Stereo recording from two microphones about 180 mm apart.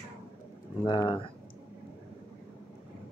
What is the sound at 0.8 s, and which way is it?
Speech, 25° left (ahead or behind).